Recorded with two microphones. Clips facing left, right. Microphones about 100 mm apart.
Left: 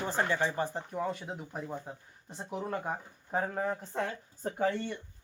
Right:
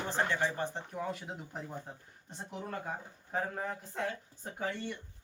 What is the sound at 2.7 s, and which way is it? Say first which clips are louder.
Speech: left 4 dB; 25° left (ahead or behind).